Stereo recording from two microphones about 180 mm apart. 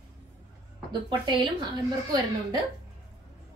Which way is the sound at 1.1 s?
25° right (ahead or behind).